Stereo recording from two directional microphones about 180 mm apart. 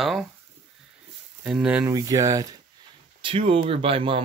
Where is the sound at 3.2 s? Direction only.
30° right (ahead or behind).